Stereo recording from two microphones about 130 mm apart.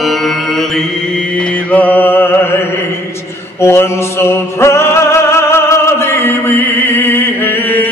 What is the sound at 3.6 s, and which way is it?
Music, 20° left (ahead or behind).